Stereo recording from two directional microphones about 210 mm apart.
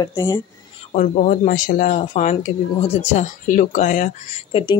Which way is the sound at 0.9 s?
40° left (ahead or behind).